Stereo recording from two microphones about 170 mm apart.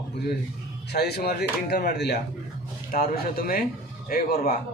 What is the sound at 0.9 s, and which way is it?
Speech, 70° left (ahead or behind).